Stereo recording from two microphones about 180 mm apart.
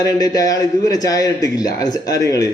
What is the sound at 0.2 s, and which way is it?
A man's voice, 20° left (ahead or behind).